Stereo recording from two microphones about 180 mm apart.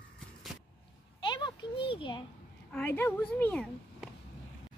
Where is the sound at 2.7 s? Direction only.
10° left (ahead or behind).